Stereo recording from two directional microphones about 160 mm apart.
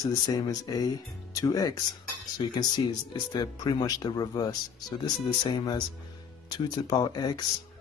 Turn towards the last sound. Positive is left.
turn(degrees=25)  # may be behind; listen again after turning